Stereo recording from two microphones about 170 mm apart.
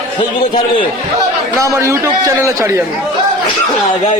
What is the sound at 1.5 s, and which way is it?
A man's voice, 15° right (ahead or behind).